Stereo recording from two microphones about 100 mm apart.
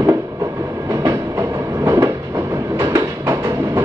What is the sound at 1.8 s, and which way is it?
Train, 35° right (ahead or behind).